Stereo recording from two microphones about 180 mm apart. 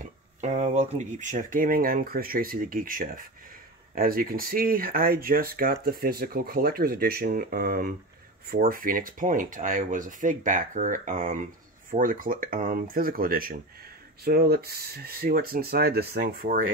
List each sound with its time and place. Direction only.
0.0 s speech: 40° right (ahead or behind)